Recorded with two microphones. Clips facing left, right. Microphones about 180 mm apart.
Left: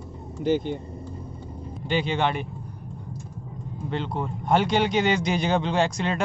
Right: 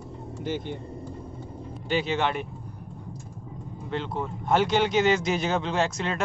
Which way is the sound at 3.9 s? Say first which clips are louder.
Left 1 dB; centre (ahead or behind).